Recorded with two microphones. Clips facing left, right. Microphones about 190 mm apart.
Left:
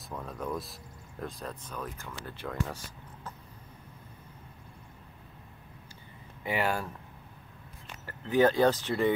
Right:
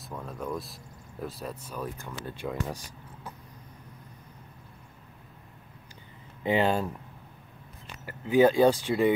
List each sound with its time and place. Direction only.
0.1 s speech: centre (ahead or behind)
6.4 s speech: 20° right (ahead or behind)
8.0 s speech: 15° right (ahead or behind)